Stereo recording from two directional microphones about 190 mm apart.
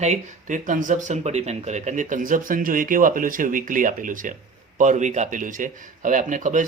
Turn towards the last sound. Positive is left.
turn(degrees=-40)  # may be behind; listen again after turning